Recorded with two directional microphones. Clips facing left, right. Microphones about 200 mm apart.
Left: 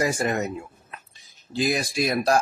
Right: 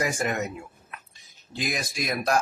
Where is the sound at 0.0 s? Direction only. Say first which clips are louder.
Left 3 dB; 35° left (ahead or behind).